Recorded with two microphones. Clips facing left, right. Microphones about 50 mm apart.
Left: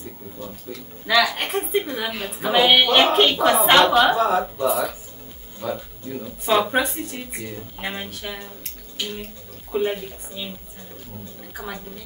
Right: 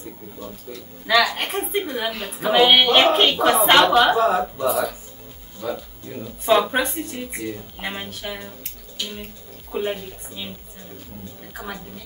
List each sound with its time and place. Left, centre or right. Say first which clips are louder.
1.0 s speech: right 1 dB; centre
6.0 s speech: right 3 dB; centre
9.7 s speech: left 2 dB; centre
11.5 s speech: even; centre